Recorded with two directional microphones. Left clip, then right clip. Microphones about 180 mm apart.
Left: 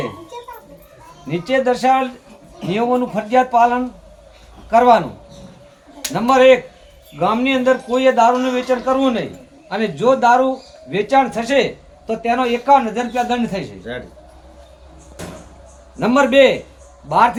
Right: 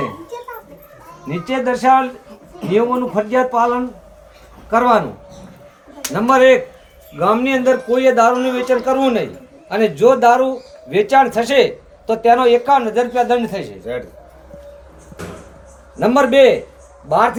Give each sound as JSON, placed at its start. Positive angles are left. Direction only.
{"t": 1.3, "sound": "speech", "side_deg": 20}
{"t": 4.7, "sound": "speech", "side_deg": 10}
{"t": 6.1, "sound": "a man's voice", "side_deg": 0}
{"t": 16.0, "sound": "speech", "side_deg": 5}